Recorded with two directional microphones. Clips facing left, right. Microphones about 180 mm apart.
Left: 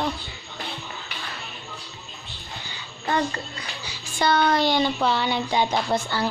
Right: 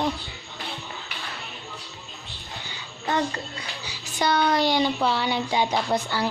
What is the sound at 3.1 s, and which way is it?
A woman's voice, 20° right (ahead or behind).